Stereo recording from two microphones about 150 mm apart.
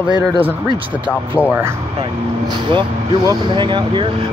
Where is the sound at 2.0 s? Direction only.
30° right (ahead or behind).